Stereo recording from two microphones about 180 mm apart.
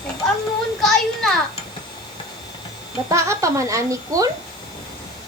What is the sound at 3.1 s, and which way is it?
Speech, 15° right (ahead or behind).